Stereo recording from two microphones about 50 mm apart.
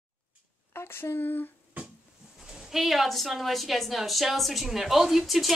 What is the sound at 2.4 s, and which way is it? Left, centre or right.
A woman's voice, centre.